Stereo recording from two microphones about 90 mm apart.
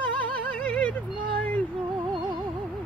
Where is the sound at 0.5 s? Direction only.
15° left (ahead or behind).